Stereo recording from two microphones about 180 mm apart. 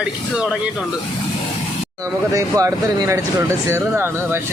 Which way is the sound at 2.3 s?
15° right (ahead or behind).